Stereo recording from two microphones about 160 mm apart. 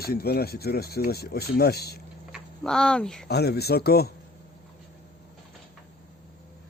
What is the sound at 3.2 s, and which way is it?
Speech, 90° left.